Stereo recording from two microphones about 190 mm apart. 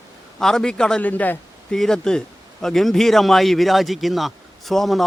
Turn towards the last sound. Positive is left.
turn(degrees=0)  # may be behind; listen again after turning